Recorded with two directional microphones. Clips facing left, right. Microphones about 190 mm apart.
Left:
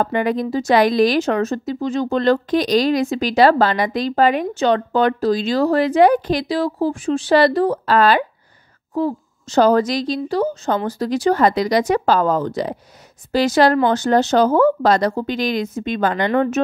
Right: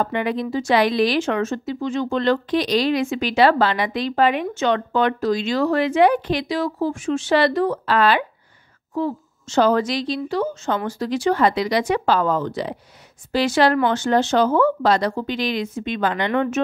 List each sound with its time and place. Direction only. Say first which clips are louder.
0.0 s speech: left 3 dB; 45° left (ahead or behind)